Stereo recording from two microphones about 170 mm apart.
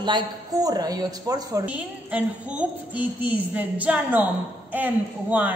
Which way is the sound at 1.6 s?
10° right (ahead or behind).